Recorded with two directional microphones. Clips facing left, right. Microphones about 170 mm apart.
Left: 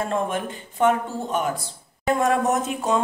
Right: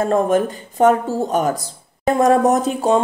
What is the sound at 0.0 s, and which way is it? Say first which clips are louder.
Speech: right 9 dB; 40° right (ahead or behind).